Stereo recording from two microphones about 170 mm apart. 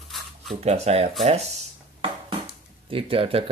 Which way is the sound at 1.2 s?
40° right (ahead or behind).